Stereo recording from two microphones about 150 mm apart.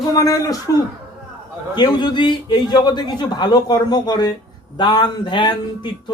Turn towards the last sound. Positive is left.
turn(degrees=30)  # may be behind; listen again after turning